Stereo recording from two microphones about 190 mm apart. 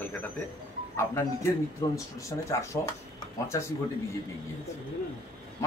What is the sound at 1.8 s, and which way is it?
Speech, 20° left (ahead or behind).